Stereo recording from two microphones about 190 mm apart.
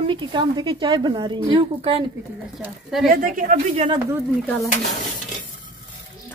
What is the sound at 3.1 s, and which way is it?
Speech, 45° right (ahead or behind).